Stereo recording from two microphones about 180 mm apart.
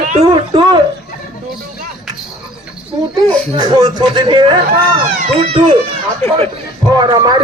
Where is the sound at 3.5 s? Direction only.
25° right (ahead or behind).